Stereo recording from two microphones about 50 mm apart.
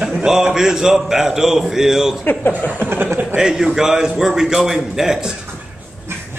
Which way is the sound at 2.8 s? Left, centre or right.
Right.